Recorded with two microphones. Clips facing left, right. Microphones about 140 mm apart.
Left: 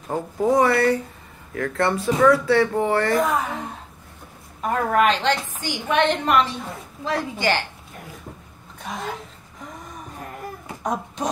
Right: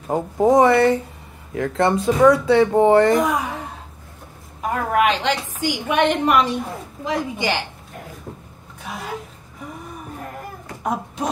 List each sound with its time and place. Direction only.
0.1 s speech: 20° right (ahead or behind)
4.6 s a woman's voice: 10° right (ahead or behind)
10.8 s a sound: 5° right (ahead or behind)